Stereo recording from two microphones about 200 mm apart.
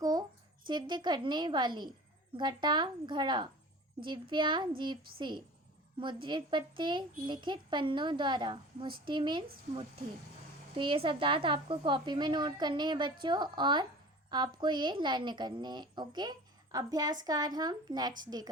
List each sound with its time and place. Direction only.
0.0 s a sound: 20° right (ahead or behind)
0.7 s a woman's voice: 20° right (ahead or behind)
6.0 s a woman's voice: 25° right (ahead or behind)
10.8 s a woman's voice: 25° right (ahead or behind)